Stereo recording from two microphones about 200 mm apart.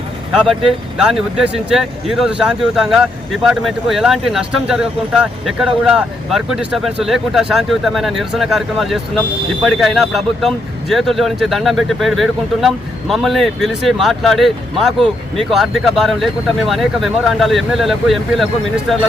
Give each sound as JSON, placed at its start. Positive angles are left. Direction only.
{"t": 0.3, "sound": "speech", "side_deg": -5}